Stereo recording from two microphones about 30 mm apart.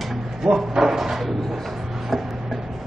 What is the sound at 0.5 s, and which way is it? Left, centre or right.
Drawer open or close, centre.